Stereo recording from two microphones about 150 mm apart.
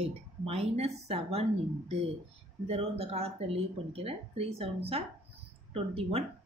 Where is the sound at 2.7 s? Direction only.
40° right (ahead or behind).